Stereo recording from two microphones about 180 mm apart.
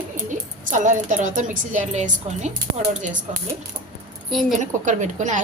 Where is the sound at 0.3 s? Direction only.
45° right (ahead or behind).